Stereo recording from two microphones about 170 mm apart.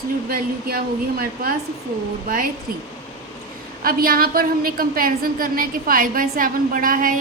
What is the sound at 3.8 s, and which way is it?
A woman's voice, 60° right (ahead or behind).